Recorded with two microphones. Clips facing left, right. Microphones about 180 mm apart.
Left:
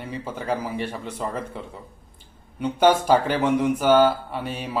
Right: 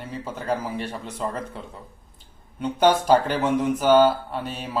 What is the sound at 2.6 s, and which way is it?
Speech, 10° left (ahead or behind).